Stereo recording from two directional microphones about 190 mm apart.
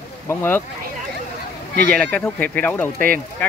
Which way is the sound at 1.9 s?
5° left (ahead or behind).